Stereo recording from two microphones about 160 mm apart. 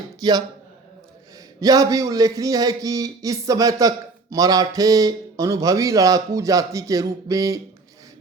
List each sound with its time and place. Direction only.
0.2 s a man's voice: 25° right (ahead or behind)
1.6 s speech: 20° right (ahead or behind)